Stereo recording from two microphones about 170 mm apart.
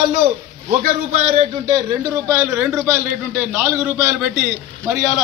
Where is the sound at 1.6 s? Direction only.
20° right (ahead or behind).